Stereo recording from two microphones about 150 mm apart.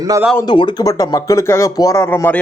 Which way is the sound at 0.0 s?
20° right (ahead or behind).